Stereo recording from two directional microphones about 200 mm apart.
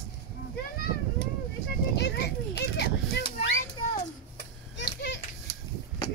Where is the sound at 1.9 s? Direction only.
55° left (ahead or behind).